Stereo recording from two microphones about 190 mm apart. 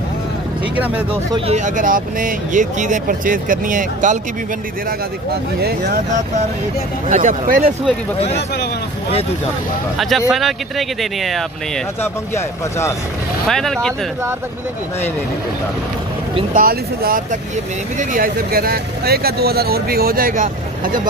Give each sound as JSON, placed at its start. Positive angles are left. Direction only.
{"t": 0.7, "sound": "speech", "side_deg": -10}
{"t": 1.5, "sound": "speech", "side_deg": -40}
{"t": 5.6, "sound": "speech", "side_deg": -55}
{"t": 7.1, "sound": "speech", "side_deg": -45}
{"t": 9.9, "sound": "speech", "side_deg": 0}
{"t": 12.0, "sound": "speech", "side_deg": 15}
{"t": 13.5, "sound": "speech", "side_deg": 0}
{"t": 16.5, "sound": "speech", "side_deg": -50}